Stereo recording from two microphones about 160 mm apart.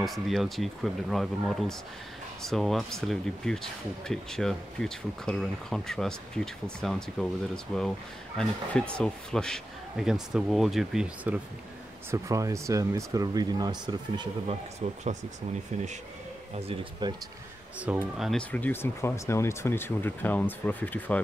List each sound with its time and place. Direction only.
0.0 s speech: centre (ahead or behind)
12.1 s speech: 20° right (ahead or behind)
16.5 s speech: 35° right (ahead or behind)
17.7 s speech: 10° right (ahead or behind)
18.5 s speech: 10° left (ahead or behind)